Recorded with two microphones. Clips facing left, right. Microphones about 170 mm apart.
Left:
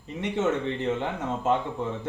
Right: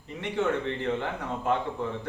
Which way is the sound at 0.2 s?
20° left (ahead or behind).